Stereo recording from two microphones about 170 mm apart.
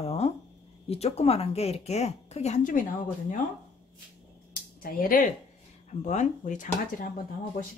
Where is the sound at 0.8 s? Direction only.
35° left (ahead or behind).